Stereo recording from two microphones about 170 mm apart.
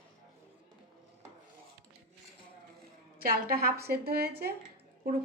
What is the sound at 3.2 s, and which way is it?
A woman's voice, 60° right (ahead or behind).